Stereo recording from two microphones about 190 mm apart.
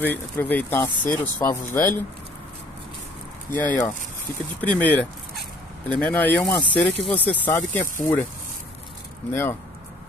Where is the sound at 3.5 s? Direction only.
10° left (ahead or behind).